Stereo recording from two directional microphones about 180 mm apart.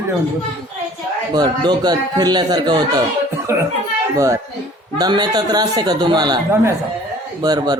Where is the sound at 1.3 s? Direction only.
25° right (ahead or behind).